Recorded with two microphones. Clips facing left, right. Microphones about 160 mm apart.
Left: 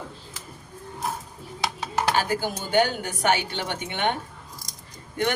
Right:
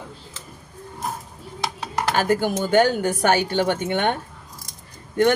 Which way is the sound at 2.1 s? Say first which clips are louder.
Right 5 dB; 55° right (ahead or behind).